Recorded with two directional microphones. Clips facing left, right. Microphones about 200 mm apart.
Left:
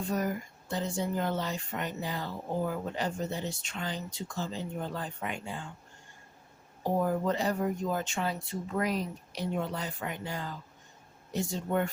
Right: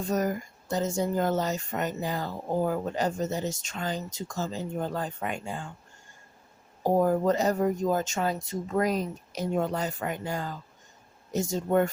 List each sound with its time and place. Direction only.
0.1 s speech: 45° right (ahead or behind)
6.8 s speech: 45° right (ahead or behind)